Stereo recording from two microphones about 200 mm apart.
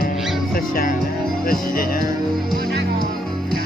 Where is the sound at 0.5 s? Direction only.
45° left (ahead or behind).